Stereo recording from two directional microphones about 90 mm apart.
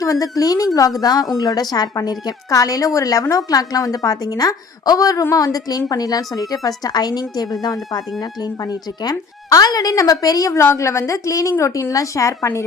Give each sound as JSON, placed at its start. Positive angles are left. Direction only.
{"t": 0.0, "sound": "a woman's voice", "side_deg": 40}
{"t": 10.6, "sound": "speech", "side_deg": 30}